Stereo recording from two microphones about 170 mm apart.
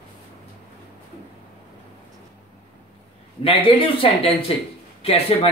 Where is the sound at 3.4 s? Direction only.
30° left (ahead or behind).